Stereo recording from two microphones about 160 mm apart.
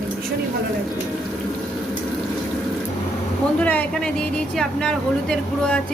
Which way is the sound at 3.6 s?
10° left (ahead or behind).